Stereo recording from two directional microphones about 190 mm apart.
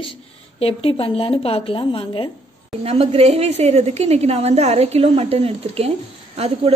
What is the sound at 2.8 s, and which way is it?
A woman's voice, 30° right (ahead or behind).